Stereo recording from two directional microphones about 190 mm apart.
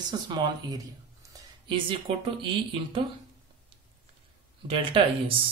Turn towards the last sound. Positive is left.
turn(degrees=-30)  # may be behind; listen again after turning